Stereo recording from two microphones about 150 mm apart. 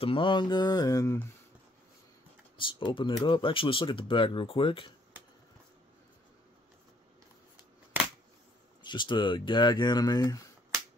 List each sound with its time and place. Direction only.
0.0 s speech: 35° left (ahead or behind); by 1.2 s 20° left (ahead or behind)
2.5 s speech: 35° left (ahead or behind)
8.8 s speech: 30° left (ahead or behind)